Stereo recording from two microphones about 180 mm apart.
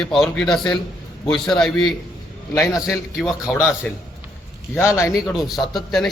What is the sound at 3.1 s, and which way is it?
Speech, centre (ahead or behind).